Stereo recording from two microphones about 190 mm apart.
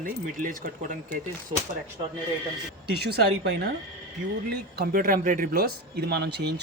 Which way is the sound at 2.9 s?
60° right (ahead or behind).